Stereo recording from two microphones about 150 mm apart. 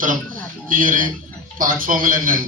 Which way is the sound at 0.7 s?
60° right (ahead or behind).